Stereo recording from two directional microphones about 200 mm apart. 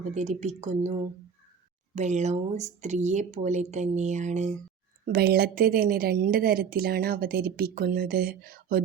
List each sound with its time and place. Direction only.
0.1 s speech: 35° right (ahead or behind)
2.0 s speech: 35° right (ahead or behind)
5.0 s speech: 50° right (ahead or behind)